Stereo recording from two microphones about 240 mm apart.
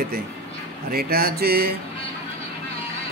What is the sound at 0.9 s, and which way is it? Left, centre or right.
Speech, right.